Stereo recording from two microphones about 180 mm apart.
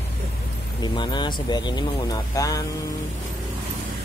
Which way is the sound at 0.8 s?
25° left (ahead or behind).